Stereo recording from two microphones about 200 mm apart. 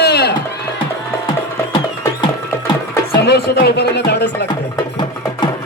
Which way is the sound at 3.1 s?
55° left (ahead or behind).